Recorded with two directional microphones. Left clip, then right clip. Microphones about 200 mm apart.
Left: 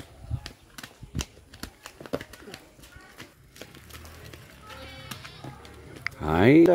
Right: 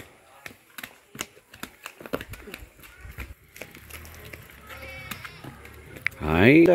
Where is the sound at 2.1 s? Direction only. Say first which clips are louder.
Right 1 dB; 10° right (ahead or behind).